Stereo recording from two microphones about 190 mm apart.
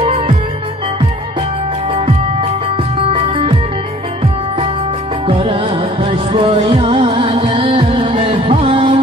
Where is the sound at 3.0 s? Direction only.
30° right (ahead or behind).